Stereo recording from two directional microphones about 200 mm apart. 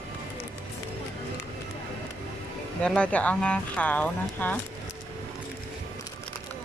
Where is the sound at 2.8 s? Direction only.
5° left (ahead or behind).